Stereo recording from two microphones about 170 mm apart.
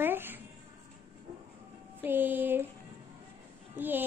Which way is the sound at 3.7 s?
10° right (ahead or behind).